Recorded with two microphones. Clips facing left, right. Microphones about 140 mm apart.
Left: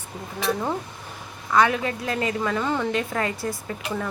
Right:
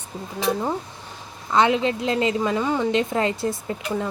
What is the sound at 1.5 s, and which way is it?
A woman's voice, 25° right (ahead or behind).